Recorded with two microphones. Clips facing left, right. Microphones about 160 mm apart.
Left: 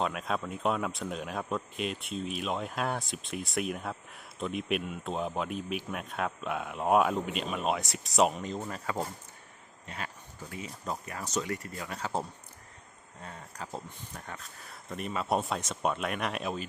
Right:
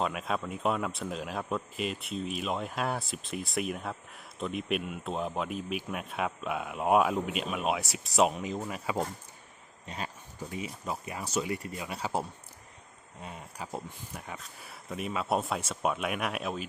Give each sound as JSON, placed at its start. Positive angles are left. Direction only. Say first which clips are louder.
{"t": 0.0, "sound": "speech", "louder": "even", "side_deg": 0}
{"t": 9.8, "sound": "a sound", "louder": "right 2 dB", "side_deg": -20}
{"t": 10.8, "sound": "speech", "louder": "right 1 dB", "side_deg": -10}
{"t": 13.2, "sound": "speech", "louder": "right 1 dB", "side_deg": -15}